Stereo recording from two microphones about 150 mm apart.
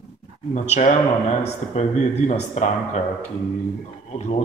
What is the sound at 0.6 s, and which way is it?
Speech, 55° left (ahead or behind).